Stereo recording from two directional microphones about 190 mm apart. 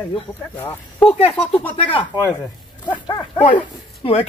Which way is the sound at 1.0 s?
30° left (ahead or behind).